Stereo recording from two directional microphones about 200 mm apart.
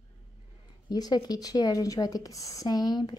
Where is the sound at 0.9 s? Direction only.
20° left (ahead or behind).